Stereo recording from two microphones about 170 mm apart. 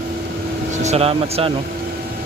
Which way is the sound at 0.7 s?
40° right (ahead or behind).